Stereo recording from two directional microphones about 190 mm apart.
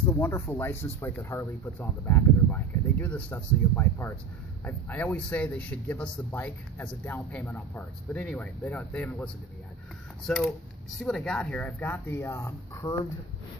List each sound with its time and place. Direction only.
0.1 s speech: 15° left (ahead or behind)